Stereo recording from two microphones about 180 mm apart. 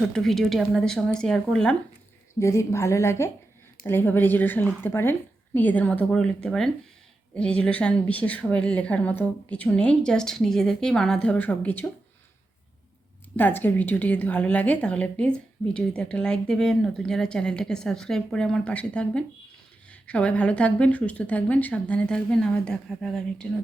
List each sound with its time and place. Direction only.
0.1 s a woman's voice: centre (ahead or behind)
2.4 s a woman's voice: 15° left (ahead or behind)
13.3 s a woman's voice: 10° left (ahead or behind)